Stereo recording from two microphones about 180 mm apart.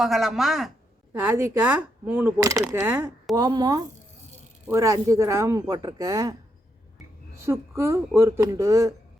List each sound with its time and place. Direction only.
0.0 s a woman's voice: centre (ahead or behind); by 6.3 s 20° right (ahead or behind)
7.3 s speech: 15° right (ahead or behind)